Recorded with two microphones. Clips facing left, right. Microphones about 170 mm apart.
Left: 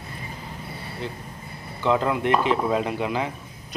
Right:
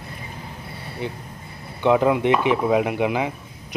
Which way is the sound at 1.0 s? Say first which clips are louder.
Right 5 dB; 15° right (ahead or behind).